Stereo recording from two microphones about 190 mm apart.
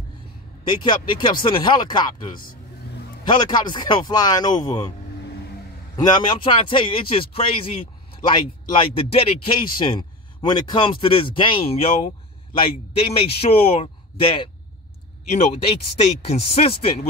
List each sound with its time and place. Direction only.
0.7 s a man's voice: 25° left (ahead or behind)
5.9 s a man's voice: 20° left (ahead or behind)